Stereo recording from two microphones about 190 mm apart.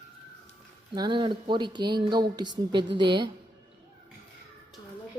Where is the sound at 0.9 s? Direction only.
25° right (ahead or behind).